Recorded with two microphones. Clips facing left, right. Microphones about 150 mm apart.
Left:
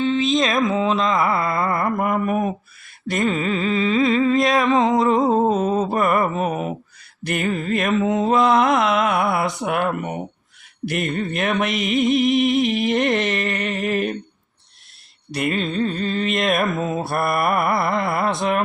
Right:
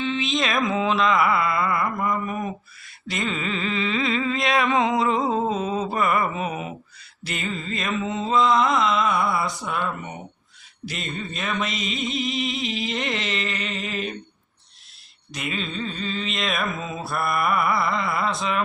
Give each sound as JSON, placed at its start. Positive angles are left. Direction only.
{"t": 0.0, "sound": "mantra", "side_deg": 45}
{"t": 0.7, "sound": "carnatic music", "side_deg": 20}
{"t": 1.4, "sound": "mantra", "side_deg": 45}
{"t": 3.7, "sound": "music", "side_deg": 40}
{"t": 5.5, "sound": "a sound", "side_deg": 45}
{"t": 5.9, "sound": "mantra", "side_deg": 45}
{"t": 9.6, "sound": "speech", "side_deg": 65}
{"t": 10.8, "sound": "music", "side_deg": 55}
{"t": 15.3, "sound": "mantra", "side_deg": 55}